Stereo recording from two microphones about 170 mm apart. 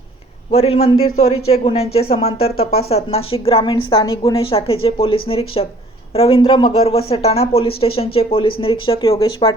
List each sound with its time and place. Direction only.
0.5 s a woman's voice: 35° left (ahead or behind); by 4.2 s 20° left (ahead or behind)
4.2 s speech: 35° left (ahead or behind)